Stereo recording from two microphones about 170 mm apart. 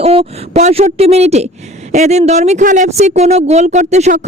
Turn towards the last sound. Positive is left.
turn(degrees=-40)  # may be behind; listen again after turning